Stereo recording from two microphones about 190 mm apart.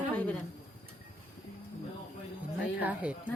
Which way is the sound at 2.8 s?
10° right (ahead or behind).